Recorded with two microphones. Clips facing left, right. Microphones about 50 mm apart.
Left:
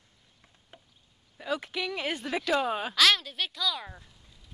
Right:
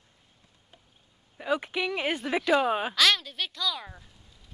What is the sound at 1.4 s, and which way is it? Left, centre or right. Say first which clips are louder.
Speech: right 4 dB; centre.